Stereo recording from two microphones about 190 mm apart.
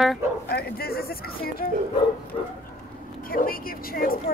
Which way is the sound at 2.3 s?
25° left (ahead or behind).